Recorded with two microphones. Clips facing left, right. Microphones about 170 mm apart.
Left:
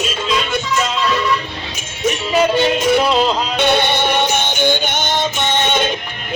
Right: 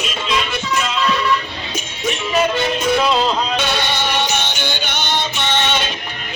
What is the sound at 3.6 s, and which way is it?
Music, 55° left (ahead or behind).